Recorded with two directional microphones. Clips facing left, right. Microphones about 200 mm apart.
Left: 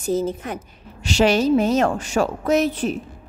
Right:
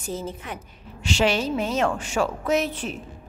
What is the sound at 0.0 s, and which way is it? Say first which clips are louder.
A woman's voice: left 9 dB; 40° left (ahead or behind).